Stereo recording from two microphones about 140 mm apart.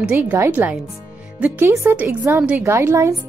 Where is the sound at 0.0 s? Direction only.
15° right (ahead or behind).